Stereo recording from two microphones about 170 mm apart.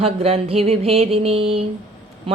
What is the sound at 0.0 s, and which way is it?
A woman's voice, 35° right (ahead or behind).